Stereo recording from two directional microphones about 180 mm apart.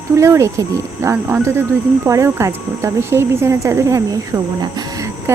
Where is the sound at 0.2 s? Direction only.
15° right (ahead or behind).